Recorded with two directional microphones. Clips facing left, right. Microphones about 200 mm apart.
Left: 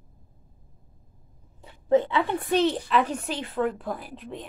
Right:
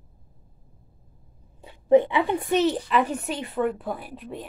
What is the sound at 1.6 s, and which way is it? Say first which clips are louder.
A woman's voice: right 4 dB; 15° right (ahead or behind).